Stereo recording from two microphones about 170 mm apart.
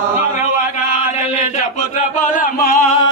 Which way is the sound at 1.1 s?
45° left (ahead or behind).